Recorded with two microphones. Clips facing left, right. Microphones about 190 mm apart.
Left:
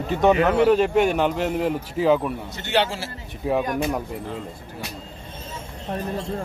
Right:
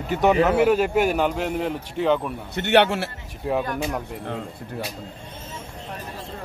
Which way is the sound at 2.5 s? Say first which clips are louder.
Right 7 dB; 60° right (ahead or behind).